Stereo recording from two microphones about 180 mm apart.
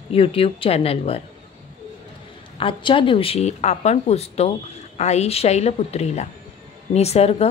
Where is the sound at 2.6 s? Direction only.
30° left (ahead or behind).